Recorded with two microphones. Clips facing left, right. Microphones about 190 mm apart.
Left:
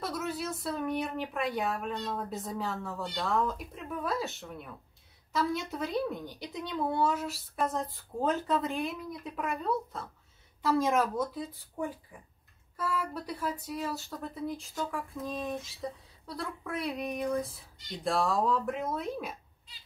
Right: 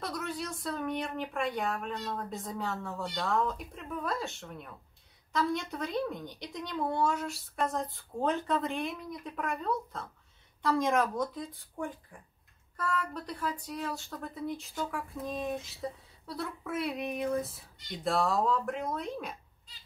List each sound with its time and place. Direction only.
0.0 s speech: 5° left (ahead or behind)